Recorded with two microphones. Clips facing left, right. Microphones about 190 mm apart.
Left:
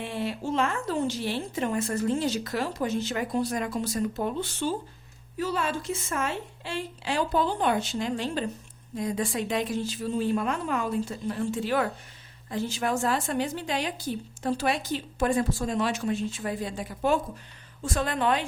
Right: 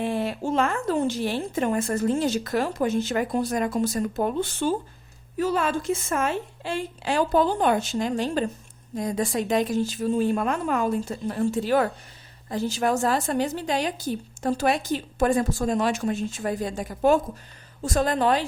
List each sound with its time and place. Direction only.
0.0 s a woman's voice: 50° right (ahead or behind)